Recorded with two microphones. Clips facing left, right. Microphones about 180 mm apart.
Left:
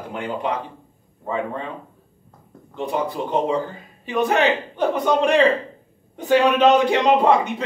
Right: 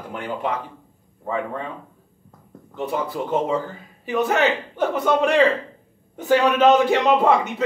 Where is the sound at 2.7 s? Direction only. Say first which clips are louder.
Left 1 dB; 15° left (ahead or behind).